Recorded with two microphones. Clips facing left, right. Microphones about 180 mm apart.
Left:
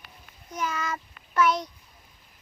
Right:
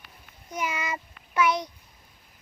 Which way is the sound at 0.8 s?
15° right (ahead or behind).